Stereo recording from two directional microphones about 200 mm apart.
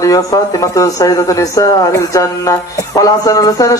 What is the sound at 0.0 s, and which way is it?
Speech, 15° left (ahead or behind).